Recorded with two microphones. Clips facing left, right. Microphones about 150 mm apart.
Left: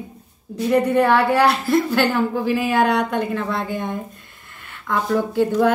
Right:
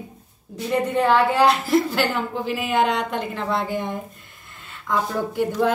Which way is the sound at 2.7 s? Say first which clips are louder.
Even; 20° right (ahead or behind).